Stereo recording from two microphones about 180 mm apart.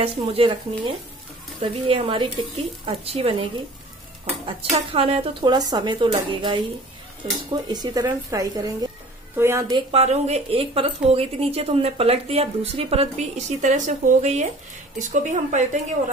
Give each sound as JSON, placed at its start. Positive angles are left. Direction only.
{"t": 0.0, "sound": "a woman's voice", "side_deg": -30}
{"t": 4.5, "sound": "a woman's voice", "side_deg": -30}
{"t": 9.8, "sound": "speech", "side_deg": -35}